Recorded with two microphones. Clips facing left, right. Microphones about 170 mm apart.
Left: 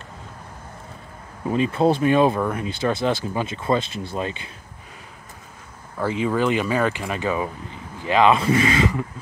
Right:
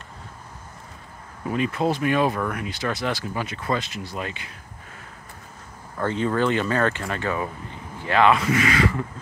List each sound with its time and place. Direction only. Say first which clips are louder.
1.5 s speech: left 4 dB; 30° left (ahead or behind)
5.9 s speech: left 1 dB; 10° left (ahead or behind)
8.4 s speech: left 2 dB; 30° left (ahead or behind)